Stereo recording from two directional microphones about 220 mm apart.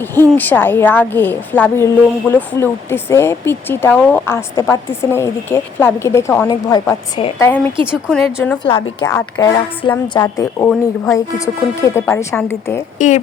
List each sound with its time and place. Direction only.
0.1 s a woman's voice: 10° left (ahead or behind)
8.6 s a woman's voice: 25° left (ahead or behind)
13.0 s speech: 35° left (ahead or behind)